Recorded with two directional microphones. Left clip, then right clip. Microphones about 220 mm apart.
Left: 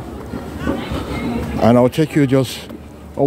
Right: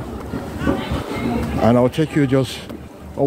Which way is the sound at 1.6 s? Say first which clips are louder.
Left 3 dB; 40° left (ahead or behind).